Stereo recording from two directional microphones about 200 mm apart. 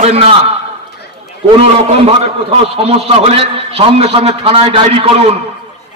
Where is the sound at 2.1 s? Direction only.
30° right (ahead or behind).